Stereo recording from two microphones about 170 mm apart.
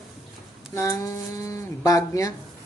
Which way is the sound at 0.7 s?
20° left (ahead or behind).